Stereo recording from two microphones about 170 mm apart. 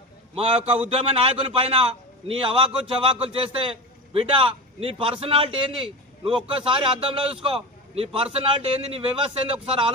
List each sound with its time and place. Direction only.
0.3 s a man's voice: 35° right (ahead or behind)